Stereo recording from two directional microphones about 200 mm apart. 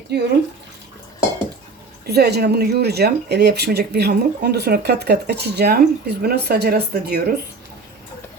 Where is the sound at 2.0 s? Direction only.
55° right (ahead or behind).